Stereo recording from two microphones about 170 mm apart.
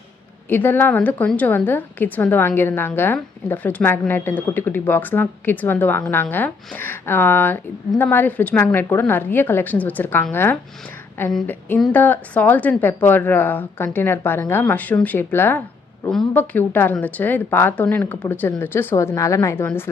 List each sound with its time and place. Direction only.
0.5 s a woman's voice: 10° left (ahead or behind)